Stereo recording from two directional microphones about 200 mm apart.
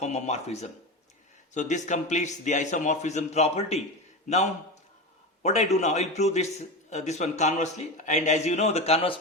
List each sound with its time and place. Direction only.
0.0 s a man's voice: 35° left (ahead or behind)
5.4 s a man's voice: 35° left (ahead or behind)